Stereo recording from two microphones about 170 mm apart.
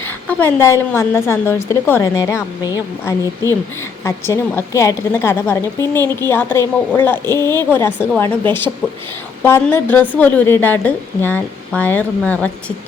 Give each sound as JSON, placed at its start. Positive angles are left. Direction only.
{"t": 0.3, "sound": "a woman's voice", "side_deg": 10}
{"t": 9.4, "sound": "a woman's voice", "side_deg": 10}